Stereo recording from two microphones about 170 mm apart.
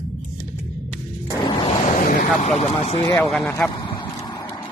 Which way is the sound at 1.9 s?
55° left (ahead or behind).